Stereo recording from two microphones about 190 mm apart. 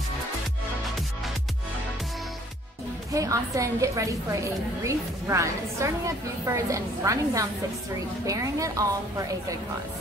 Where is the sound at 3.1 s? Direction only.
15° right (ahead or behind).